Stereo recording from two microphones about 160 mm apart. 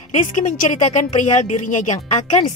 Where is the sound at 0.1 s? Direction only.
50° left (ahead or behind).